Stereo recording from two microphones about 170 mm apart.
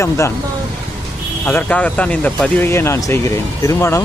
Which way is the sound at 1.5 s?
10° left (ahead or behind).